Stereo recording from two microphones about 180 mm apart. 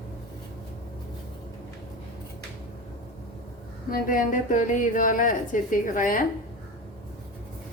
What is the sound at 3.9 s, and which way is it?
A woman's voice, 50° left (ahead or behind).